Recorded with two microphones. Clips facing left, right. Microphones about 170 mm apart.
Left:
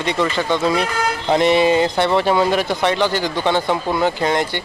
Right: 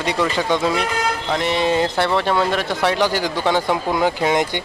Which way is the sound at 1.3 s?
20° left (ahead or behind).